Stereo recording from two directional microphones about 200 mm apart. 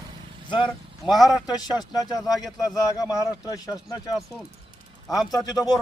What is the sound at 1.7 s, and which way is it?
Speech, 20° left (ahead or behind).